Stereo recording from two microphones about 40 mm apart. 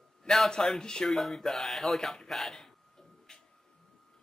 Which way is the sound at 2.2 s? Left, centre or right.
Centre.